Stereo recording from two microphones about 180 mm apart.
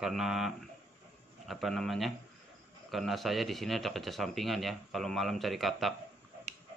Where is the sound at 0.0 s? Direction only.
5° right (ahead or behind).